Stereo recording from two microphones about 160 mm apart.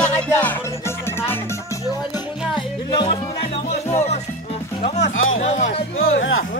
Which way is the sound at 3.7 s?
45° left (ahead or behind).